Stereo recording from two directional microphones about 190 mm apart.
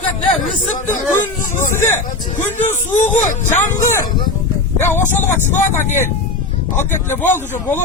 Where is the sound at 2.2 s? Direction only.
40° left (ahead or behind).